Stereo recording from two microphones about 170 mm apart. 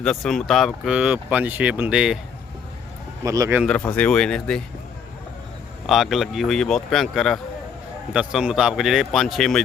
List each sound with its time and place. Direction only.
0.0 s speech: centre (ahead or behind)
3.2 s speech: 20° right (ahead or behind)
3.7 s speech: 5° left (ahead or behind)
5.8 s speech: centre (ahead or behind)